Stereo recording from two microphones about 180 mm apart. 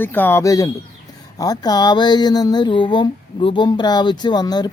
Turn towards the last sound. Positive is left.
turn(degrees=25)  # may be behind; listen again after turning